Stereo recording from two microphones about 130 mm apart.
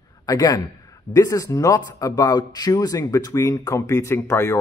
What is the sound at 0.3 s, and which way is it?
Speech, 30° left (ahead or behind).